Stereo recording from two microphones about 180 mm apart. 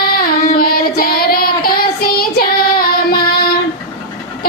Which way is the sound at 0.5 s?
55° left (ahead or behind).